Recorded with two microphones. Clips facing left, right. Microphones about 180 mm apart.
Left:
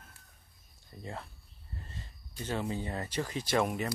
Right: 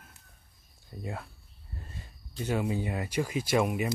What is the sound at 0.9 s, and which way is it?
Speech, 15° right (ahead or behind).